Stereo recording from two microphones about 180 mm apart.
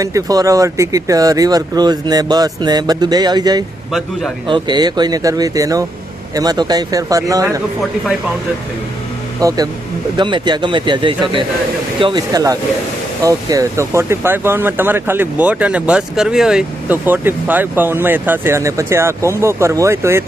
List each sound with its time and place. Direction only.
0.0 s speech: 20° right (ahead or behind)
9.4 s speech: 20° right (ahead or behind)